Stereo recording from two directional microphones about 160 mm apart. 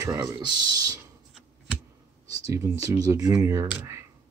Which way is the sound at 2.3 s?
20° right (ahead or behind).